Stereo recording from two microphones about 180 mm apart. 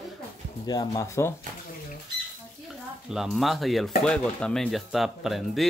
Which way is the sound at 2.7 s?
Centre (ahead or behind).